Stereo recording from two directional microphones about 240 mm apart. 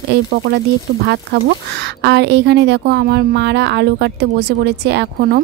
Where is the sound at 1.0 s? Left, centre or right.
Right.